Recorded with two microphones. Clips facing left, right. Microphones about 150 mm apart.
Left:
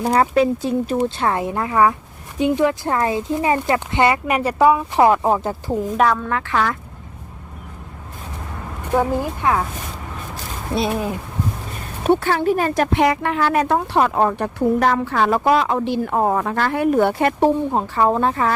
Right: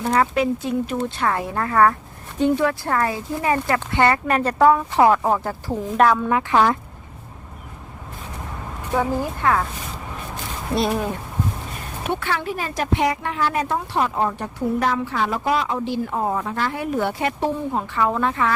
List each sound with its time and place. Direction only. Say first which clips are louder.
0.0 s speech: left 3 dB; 35° left (ahead or behind)
6.0 s speech: right 2 dB; centre (ahead or behind)
6.2 s speech: right 3 dB; 20° right (ahead or behind)
9.0 s speech: left 2 dB; 15° left (ahead or behind)
10.8 s speech: left 1 dB; centre (ahead or behind)
12.0 s speech: left 8 dB; 40° left (ahead or behind)
17.7 s speech: left 4 dB; 35° left (ahead or behind)